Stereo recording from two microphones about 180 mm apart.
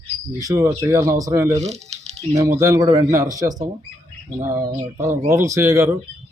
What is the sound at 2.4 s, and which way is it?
Speech, 15° right (ahead or behind).